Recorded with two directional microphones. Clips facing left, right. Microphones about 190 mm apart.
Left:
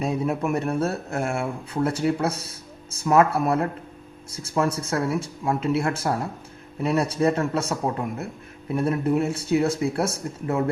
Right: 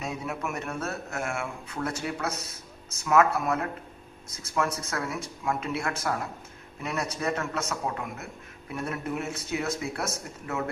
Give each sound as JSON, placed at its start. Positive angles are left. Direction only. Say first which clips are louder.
{"t": 0.0, "sound": "speech", "louder": "left 9 dB", "side_deg": 30}